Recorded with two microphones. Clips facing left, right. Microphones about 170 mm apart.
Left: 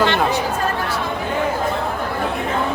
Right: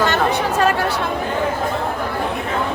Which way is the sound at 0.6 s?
80° right.